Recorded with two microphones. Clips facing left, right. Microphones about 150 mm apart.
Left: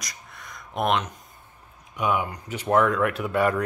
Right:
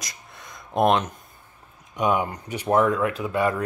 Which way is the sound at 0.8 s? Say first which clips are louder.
Right 4 dB; 40° right (ahead or behind).